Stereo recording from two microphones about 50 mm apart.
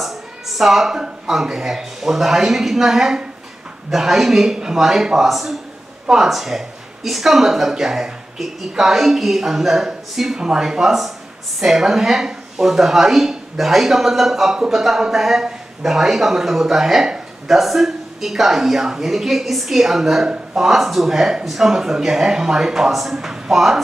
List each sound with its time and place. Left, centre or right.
0.0 s a woman's voice: centre